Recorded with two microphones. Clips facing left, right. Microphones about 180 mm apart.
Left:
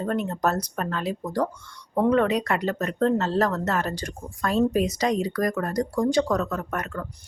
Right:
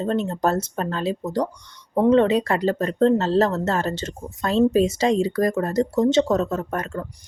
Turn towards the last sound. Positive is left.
turn(degrees=-30)  # may be behind; listen again after turning